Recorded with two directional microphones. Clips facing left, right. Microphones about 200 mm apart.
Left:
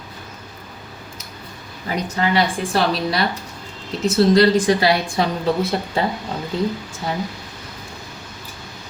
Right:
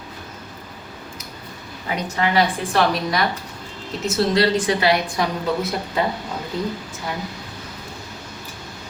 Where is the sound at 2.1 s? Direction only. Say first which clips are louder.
Even; 30° left (ahead or behind).